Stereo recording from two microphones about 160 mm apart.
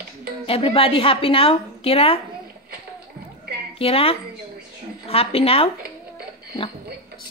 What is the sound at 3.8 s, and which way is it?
A woman's voice, 35° left (ahead or behind).